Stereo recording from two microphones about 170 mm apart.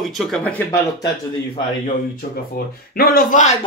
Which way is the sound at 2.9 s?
60° left (ahead or behind).